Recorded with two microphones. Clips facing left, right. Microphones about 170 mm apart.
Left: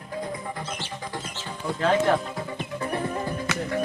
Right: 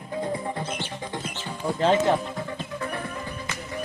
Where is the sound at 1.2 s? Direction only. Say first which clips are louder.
Right 3 dB; 15° right (ahead or behind).